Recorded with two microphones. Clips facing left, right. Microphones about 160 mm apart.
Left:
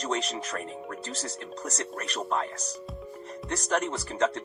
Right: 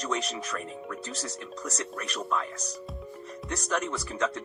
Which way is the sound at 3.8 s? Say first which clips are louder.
Left 3 dB; 30° left (ahead or behind).